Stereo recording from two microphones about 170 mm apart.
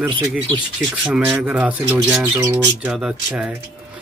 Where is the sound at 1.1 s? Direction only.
5° right (ahead or behind).